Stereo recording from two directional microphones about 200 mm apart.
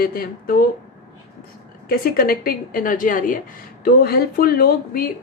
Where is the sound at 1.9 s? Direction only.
45° left (ahead or behind).